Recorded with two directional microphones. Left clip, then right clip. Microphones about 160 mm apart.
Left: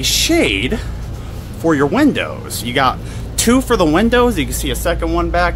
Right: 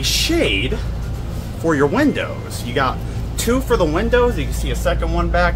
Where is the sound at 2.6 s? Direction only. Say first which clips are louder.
Left 4 dB; 60° left (ahead or behind).